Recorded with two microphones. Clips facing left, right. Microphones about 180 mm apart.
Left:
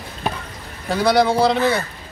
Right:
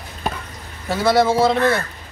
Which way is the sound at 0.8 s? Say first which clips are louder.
Even; centre (ahead or behind).